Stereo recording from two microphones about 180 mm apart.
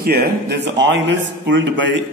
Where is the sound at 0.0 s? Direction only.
60° right (ahead or behind).